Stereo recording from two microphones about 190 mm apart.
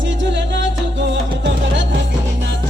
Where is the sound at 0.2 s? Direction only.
70° right (ahead or behind).